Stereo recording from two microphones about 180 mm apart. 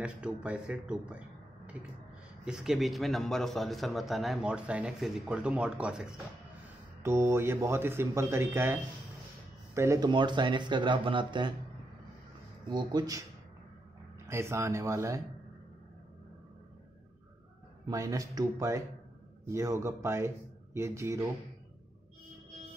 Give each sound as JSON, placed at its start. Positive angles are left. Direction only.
{"t": 0.0, "sound": "speech", "side_deg": -5}
{"t": 2.4, "sound": "a man's voice", "side_deg": -5}
{"t": 9.8, "sound": "speech", "side_deg": -20}
{"t": 12.6, "sound": "speech", "side_deg": -25}
{"t": 14.2, "sound": "speech", "side_deg": -15}
{"t": 17.8, "sound": "a man's voice", "side_deg": -20}